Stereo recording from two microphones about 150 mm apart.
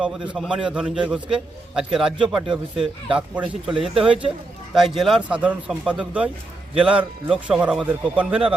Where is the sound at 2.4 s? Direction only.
35° right (ahead or behind).